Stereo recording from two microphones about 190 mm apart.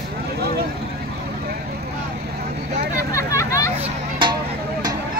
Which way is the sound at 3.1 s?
15° left (ahead or behind).